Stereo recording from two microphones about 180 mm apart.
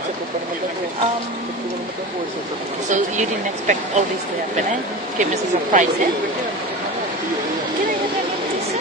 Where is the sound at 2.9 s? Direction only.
45° right (ahead or behind).